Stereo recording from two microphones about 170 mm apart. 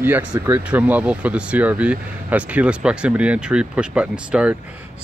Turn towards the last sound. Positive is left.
turn(degrees=-5)  # may be behind; listen again after turning